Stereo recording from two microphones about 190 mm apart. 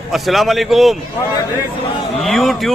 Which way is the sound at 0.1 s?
Centre (ahead or behind).